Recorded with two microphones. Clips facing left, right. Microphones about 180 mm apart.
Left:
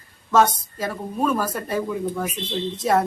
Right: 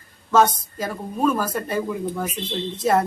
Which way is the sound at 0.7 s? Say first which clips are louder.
Left 1 dB; 5° right (ahead or behind).